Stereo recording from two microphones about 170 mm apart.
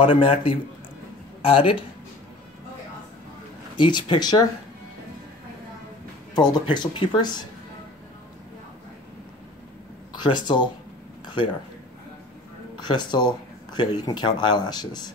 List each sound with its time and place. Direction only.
0.0 s a man's voice: 30° left (ahead or behind)
3.7 s speech: 25° left (ahead or behind)
6.3 s speech: 25° left (ahead or behind)
10.1 s speech: 25° left (ahead or behind)
11.2 s a sound: 30° left (ahead or behind)
12.7 s speech: 25° left (ahead or behind)